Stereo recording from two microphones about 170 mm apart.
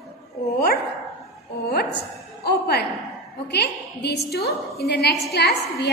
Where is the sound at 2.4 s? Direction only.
70° left (ahead or behind).